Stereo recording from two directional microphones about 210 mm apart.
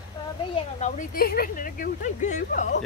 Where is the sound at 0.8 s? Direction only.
35° left (ahead or behind).